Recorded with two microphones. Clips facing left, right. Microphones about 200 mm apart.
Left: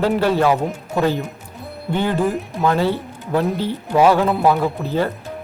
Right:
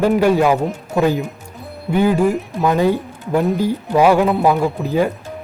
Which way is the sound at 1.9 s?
10° right (ahead or behind).